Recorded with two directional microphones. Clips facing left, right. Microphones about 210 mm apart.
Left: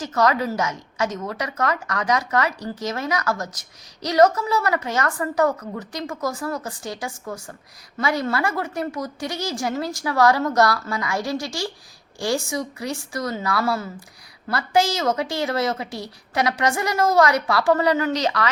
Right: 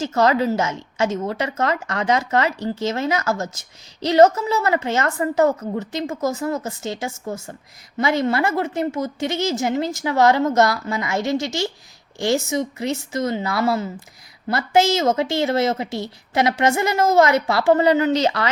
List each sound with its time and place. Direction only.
0.0 s a woman's voice: 25° right (ahead or behind)